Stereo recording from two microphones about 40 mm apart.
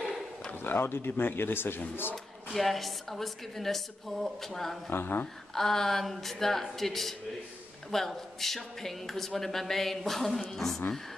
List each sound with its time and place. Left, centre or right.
0.7 s speech: left
2.5 s speech: centre
4.9 s speech: left
5.5 s speech: centre